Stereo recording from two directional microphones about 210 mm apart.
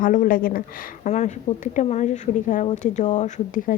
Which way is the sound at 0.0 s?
40° left (ahead or behind).